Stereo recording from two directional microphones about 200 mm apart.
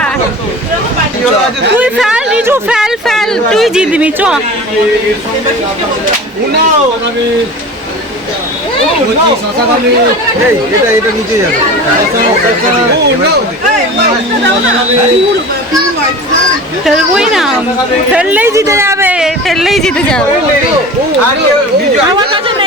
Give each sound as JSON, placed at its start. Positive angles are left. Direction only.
{"t": 1.8, "sound": "speech", "side_deg": -5}
{"t": 16.8, "sound": "speech", "side_deg": 0}
{"t": 22.1, "sound": "speech", "side_deg": -25}